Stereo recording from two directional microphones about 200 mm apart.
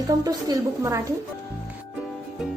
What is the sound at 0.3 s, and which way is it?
Speech, 20° right (ahead or behind).